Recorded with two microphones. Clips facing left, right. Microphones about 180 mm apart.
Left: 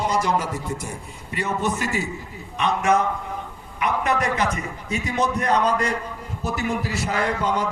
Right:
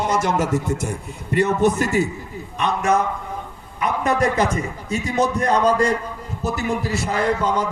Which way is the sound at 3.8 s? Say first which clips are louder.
Right 3 dB; 40° right (ahead or behind).